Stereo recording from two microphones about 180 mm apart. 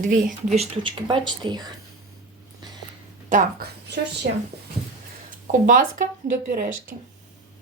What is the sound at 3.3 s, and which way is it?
Speech, 50° right (ahead or behind).